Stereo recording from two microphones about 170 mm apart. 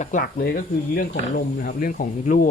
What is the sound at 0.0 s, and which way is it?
Speech, 50° left (ahead or behind).